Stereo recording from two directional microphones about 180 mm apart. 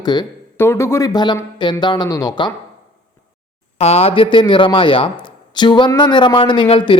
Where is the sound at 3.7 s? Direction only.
35° left (ahead or behind).